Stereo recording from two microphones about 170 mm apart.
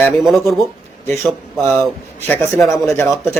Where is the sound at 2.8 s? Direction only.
15° left (ahead or behind).